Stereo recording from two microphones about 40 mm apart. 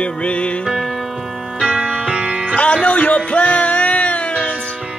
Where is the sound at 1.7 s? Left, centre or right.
Right.